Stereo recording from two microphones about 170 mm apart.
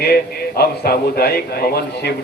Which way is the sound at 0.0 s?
65° left (ahead or behind).